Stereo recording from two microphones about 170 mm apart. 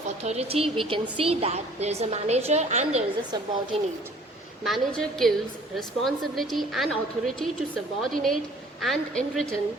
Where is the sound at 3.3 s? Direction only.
25° right (ahead or behind).